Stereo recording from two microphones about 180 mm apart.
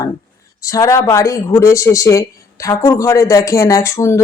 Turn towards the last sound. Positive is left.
turn(degrees=15)  # may be behind; listen again after turning